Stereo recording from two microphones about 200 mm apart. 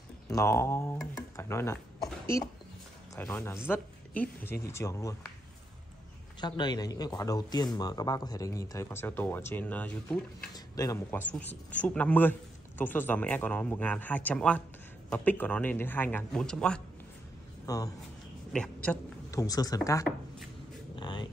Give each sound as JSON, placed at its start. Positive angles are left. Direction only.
{"t": 0.3, "sound": "speech", "side_deg": 15}
{"t": 3.2, "sound": "speech", "side_deg": 10}
{"t": 6.4, "sound": "speech", "side_deg": 20}
{"t": 10.5, "sound": "speech", "side_deg": 15}
{"t": 17.6, "sound": "speech", "side_deg": 15}
{"t": 18.5, "sound": "a sound", "side_deg": 5}
{"t": 19.4, "sound": "speech", "side_deg": 20}
{"t": 20.9, "sound": "a sound", "side_deg": 25}